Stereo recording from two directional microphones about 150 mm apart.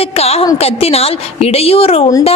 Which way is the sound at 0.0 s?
45° left (ahead or behind).